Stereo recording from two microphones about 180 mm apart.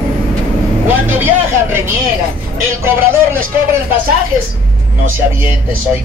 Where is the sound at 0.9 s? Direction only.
10° right (ahead or behind).